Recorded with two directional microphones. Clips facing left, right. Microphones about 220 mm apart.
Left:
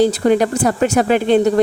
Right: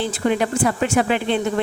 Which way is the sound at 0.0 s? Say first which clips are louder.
Left 7 dB; 40° left (ahead or behind).